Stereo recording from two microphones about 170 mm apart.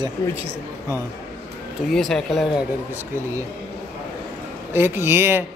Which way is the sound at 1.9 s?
Centre (ahead or behind).